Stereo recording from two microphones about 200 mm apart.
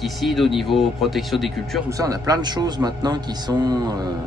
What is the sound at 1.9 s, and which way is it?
Speech, 15° right (ahead or behind).